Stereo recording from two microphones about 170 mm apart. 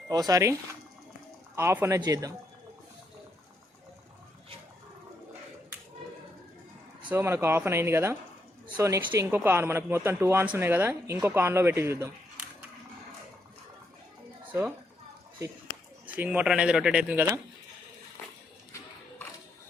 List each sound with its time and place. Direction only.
0.1 s speech: 20° right (ahead or behind)
1.5 s speech: 15° right (ahead or behind)
7.1 s speech: 15° right (ahead or behind)
16.0 s speech: 10° right (ahead or behind)